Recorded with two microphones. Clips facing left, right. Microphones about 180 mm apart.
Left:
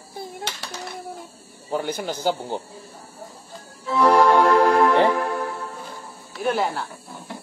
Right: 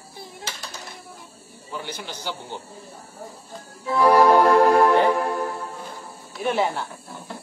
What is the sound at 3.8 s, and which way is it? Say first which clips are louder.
Music: right 1 dB; centre (ahead or behind).